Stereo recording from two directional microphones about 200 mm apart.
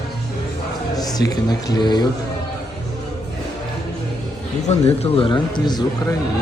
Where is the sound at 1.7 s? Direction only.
20° left (ahead or behind).